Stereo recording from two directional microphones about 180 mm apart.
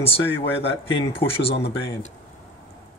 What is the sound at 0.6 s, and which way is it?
Speech, 30° left (ahead or behind).